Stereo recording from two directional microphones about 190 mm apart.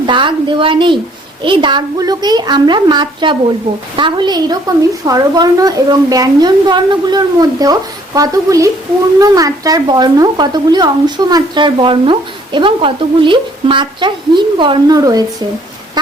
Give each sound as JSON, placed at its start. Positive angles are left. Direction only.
{"t": 0.0, "sound": "speech", "side_deg": -25}